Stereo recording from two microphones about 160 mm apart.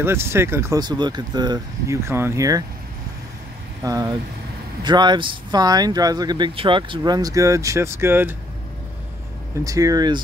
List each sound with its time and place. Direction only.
0.0 s speech: 15° right (ahead or behind)
3.8 s speech: 25° right (ahead or behind)
7.0 s speech: 25° right (ahead or behind)
9.7 s speech: 20° right (ahead or behind)